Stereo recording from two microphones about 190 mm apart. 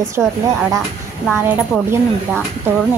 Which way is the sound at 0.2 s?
5° right (ahead or behind).